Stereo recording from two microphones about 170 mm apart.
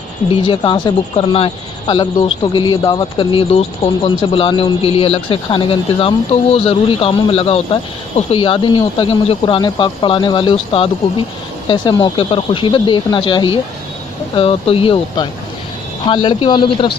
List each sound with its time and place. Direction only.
0.3 s speech: 30° left (ahead or behind)
1.9 s speech: 25° left (ahead or behind)